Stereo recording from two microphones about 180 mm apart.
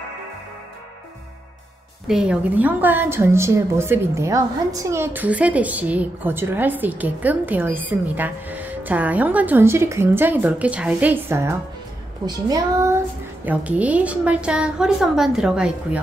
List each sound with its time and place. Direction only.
2.0 s a woman's voice: 5° right (ahead or behind)